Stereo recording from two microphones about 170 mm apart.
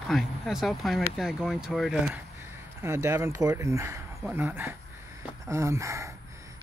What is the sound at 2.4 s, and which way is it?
Speech, 15° right (ahead or behind).